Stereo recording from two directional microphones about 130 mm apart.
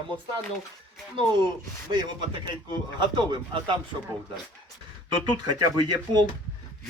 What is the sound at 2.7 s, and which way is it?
Speech, 35° right (ahead or behind).